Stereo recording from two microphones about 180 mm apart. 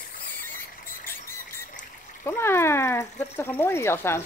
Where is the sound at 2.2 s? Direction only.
15° left (ahead or behind).